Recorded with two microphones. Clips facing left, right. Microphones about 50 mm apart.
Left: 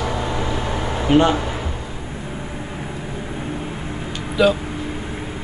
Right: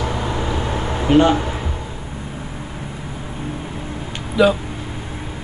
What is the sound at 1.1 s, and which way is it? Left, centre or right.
Speech, centre.